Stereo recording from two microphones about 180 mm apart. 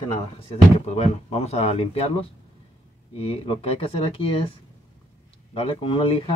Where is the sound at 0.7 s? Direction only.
35° left (ahead or behind).